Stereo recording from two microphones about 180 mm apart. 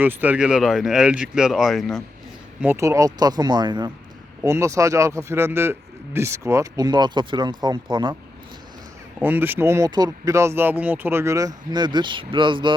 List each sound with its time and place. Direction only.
0.0 s speech: 10° right (ahead or behind)
2.6 s speech: 15° right (ahead or behind)
9.1 s speech: 10° right (ahead or behind); by 12.7 s 25° right (ahead or behind)